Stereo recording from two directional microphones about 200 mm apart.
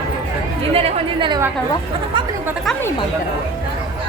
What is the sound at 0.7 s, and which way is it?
Speech, 30° right (ahead or behind).